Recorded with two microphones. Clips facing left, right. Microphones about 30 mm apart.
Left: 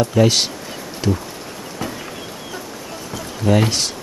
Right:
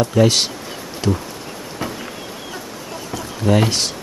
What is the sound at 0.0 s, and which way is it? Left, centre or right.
Speech, centre.